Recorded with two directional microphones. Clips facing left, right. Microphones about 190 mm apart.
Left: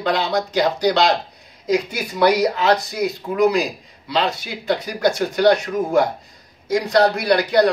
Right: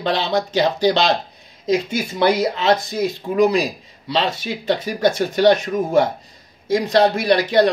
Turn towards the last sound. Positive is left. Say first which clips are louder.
# right 1 dB
turn(degrees=-25)  # may be behind; listen again after turning